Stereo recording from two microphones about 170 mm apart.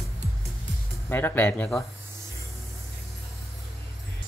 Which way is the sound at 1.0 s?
10° left (ahead or behind).